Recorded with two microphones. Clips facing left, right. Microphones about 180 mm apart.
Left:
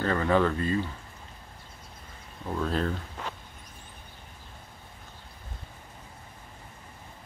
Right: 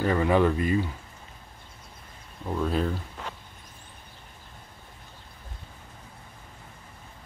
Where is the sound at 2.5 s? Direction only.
5° right (ahead or behind).